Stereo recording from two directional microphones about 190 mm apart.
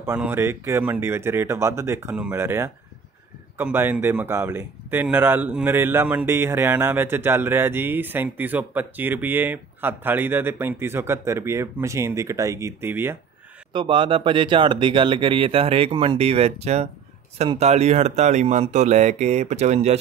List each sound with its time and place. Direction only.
0.0 s a man's voice: 10° right (ahead or behind)
13.7 s speech: 25° right (ahead or behind)